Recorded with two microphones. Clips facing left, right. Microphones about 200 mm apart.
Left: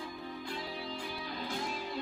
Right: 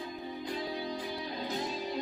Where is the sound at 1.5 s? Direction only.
20° right (ahead or behind).